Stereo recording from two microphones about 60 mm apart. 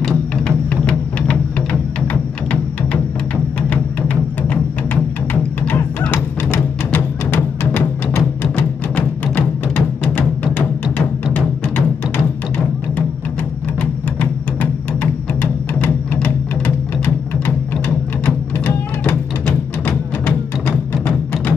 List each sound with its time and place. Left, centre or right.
0.5 s music: centre
4.1 s music: left
13.7 s a sound: left
15.7 s music: left
21.0 s music: left